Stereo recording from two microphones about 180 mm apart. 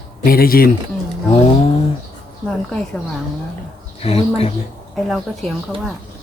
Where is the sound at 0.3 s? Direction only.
55° left (ahead or behind).